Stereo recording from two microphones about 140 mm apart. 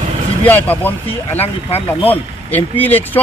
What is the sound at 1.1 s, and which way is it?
Speech, 45° left (ahead or behind).